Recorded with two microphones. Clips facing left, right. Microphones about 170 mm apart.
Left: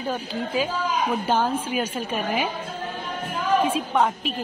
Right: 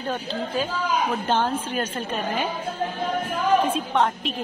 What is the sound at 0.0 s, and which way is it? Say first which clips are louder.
A woman's voice: even; 10° left (ahead or behind).